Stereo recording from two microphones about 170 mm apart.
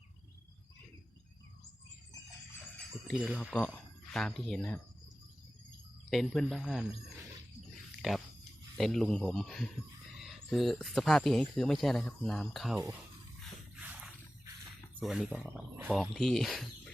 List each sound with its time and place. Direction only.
3.1 s speech: centre (ahead or behind)
6.1 s speech: centre (ahead or behind)
8.0 s a sound: centre (ahead or behind)
8.8 s speech: centre (ahead or behind)
12.7 s speech: 10° right (ahead or behind)
13.8 s a sound: 10° right (ahead or behind)
15.0 s speech: centre (ahead or behind)